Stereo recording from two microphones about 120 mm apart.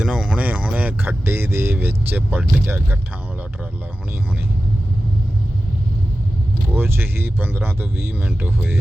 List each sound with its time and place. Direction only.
0.0 s speech: 5° right (ahead or behind)
6.7 s speech: 20° right (ahead or behind)